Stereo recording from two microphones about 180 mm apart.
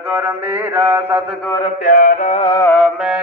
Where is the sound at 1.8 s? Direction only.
45° left (ahead or behind).